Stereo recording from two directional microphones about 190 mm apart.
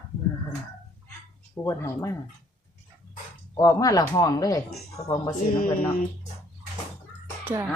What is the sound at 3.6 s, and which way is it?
Speech, 20° left (ahead or behind).